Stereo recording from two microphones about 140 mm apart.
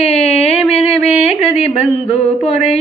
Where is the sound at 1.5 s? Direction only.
45° left (ahead or behind).